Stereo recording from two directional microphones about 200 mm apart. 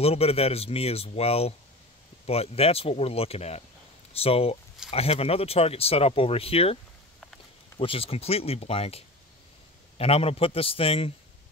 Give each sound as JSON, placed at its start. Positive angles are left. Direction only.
{"t": 0.0, "sound": "speech", "side_deg": 30}